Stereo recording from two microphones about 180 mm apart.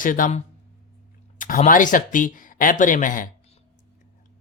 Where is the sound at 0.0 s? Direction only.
50° left (ahead or behind).